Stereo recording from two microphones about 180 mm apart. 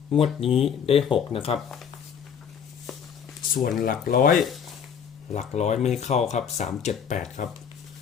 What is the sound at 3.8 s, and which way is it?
Speech, 50° left (ahead or behind).